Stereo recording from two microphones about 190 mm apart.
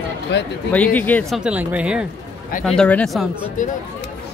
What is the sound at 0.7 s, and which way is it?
Speech, 10° left (ahead or behind).